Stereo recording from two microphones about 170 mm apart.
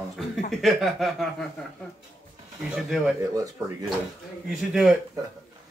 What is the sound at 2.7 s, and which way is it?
Speech, 5° right (ahead or behind).